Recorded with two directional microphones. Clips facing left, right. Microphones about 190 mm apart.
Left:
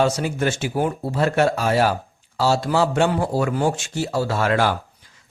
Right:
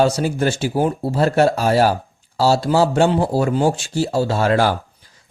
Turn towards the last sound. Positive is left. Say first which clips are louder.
# right 3 dB
turn(degrees=-35)  # may be behind; listen again after turning